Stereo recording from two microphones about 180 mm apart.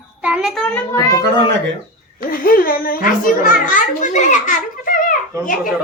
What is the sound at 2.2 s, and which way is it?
A child's voice, 50° left (ahead or behind).